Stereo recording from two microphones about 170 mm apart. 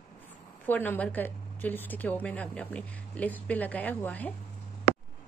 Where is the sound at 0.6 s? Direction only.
10° left (ahead or behind).